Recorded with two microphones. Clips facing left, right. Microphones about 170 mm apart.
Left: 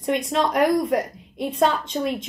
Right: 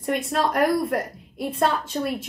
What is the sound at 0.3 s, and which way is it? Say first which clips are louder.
A woman's voice: left 1 dB; centre (ahead or behind).